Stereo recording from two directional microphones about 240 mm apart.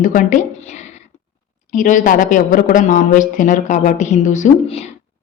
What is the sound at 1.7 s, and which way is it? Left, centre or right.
A woman's voice, left.